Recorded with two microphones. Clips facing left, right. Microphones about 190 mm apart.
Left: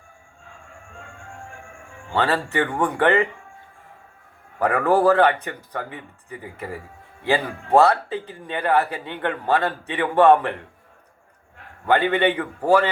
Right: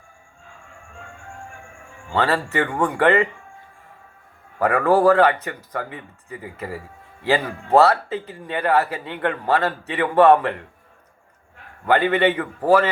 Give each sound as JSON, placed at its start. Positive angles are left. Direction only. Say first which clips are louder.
{"t": 2.0, "sound": "a man's voice", "louder": "right 1 dB", "side_deg": 15}
{"t": 4.6, "sound": "a man's voice", "louder": "right 2 dB", "side_deg": 15}
{"t": 7.3, "sound": "a man's voice", "louder": "right 1 dB", "side_deg": 15}
{"t": 8.1, "sound": "speech", "louder": "right 1 dB", "side_deg": -15}
{"t": 8.4, "sound": "a man's voice", "louder": "right 1 dB", "side_deg": 20}
{"t": 11.9, "sound": "a man's voice", "louder": "right 1 dB", "side_deg": 15}